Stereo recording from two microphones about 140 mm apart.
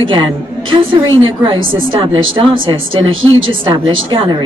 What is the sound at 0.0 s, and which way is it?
A woman's voice, 35° right (ahead or behind).